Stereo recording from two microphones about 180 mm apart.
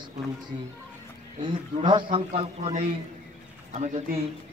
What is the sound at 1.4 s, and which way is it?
A man's voice, 30° right (ahead or behind).